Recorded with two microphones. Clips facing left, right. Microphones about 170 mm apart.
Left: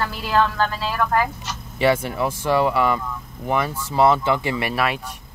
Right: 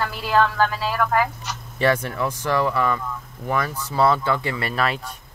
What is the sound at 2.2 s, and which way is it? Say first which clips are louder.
Speech: left 4 dB; 25° left (ahead or behind).